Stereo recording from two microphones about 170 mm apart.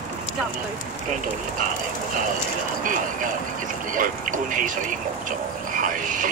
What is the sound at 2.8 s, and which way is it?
Speech, 50° right (ahead or behind).